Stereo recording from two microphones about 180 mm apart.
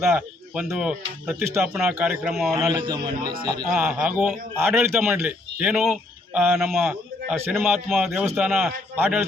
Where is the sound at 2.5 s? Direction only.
25° right (ahead or behind).